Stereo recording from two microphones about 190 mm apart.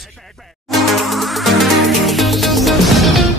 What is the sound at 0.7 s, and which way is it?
Music, centre (ahead or behind).